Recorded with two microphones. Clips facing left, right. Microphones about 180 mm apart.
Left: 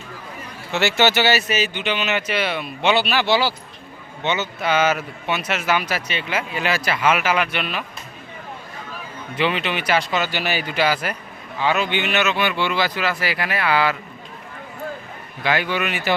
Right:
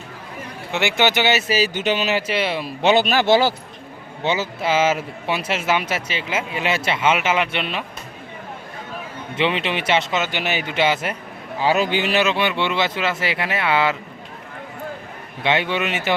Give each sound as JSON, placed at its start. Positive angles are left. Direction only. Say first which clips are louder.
{"t": 0.7, "sound": "a man's voice", "louder": "left 1 dB", "side_deg": -15}
{"t": 2.9, "sound": "speech", "louder": "right 4 dB", "side_deg": -45}
{"t": 4.2, "sound": "a man's voice", "louder": "right 1 dB", "side_deg": -30}
{"t": 9.3, "sound": "a man's voice", "louder": "right 1 dB", "side_deg": -25}
{"t": 11.6, "sound": "a man's voice", "louder": "right 2 dB", "side_deg": -35}
{"t": 15.4, "sound": "a man's voice", "louder": "right 1 dB", "side_deg": -25}